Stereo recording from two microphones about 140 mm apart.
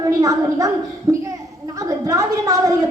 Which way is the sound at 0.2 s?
25° right (ahead or behind).